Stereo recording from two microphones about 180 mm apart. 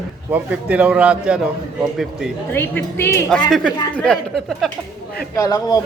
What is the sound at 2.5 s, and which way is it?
A woman's voice, 10° left (ahead or behind).